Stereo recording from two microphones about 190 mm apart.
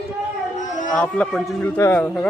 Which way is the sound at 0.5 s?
40° left (ahead or behind).